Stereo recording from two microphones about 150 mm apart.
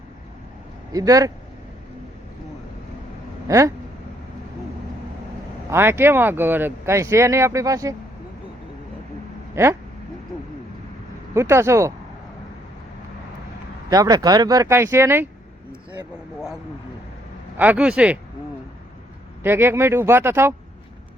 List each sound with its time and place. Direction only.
0.9 s speech: 25° right (ahead or behind)
3.4 s speech: 20° right (ahead or behind)
5.7 s speech: 15° right (ahead or behind)
9.6 s speech: 15° right (ahead or behind)
11.3 s speech: 20° right (ahead or behind)
13.9 s speech: 25° right (ahead or behind)
17.6 s speech: 10° right (ahead or behind)
19.4 s speech: 15° right (ahead or behind)